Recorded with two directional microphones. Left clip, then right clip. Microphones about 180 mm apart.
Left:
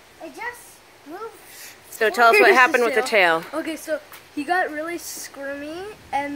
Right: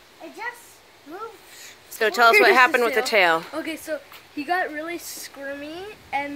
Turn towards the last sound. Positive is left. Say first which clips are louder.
# left 2 dB
turn(degrees=-10)  # may be behind; listen again after turning